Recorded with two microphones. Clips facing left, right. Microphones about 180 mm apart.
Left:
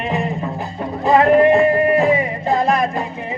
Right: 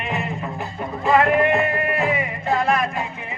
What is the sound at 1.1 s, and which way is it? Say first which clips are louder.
Speech: left 5 dB; 35° left (ahead or behind).